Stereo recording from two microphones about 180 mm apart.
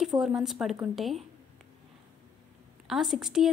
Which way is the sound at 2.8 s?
Centre (ahead or behind).